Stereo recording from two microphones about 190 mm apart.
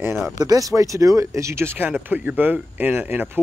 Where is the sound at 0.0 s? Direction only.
15° right (ahead or behind).